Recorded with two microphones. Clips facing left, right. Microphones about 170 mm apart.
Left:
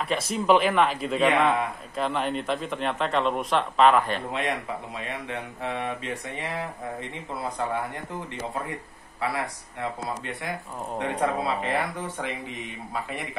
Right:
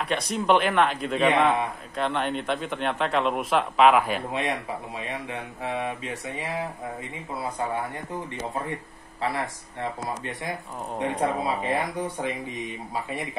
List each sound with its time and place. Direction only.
0.1 s a man's voice: centre (ahead or behind)
5.6 s mantra: 10° right (ahead or behind)
11.0 s speech: 15° right (ahead or behind)